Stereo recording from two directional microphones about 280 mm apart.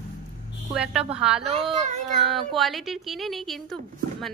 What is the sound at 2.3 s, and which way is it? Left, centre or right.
A woman's voice, centre.